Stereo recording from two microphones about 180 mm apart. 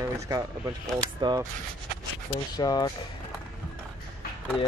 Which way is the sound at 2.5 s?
20° left (ahead or behind).